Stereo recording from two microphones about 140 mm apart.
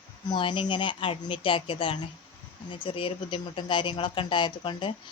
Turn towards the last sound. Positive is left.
turn(degrees=35)  # may be behind; listen again after turning